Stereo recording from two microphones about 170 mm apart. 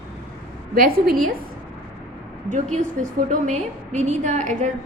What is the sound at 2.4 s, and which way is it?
A woman's voice, 45° right (ahead or behind).